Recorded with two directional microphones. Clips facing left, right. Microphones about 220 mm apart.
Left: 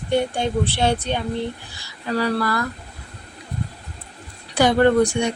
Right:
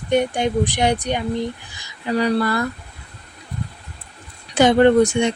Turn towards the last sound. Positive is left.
turn(degrees=-20)  # may be behind; listen again after turning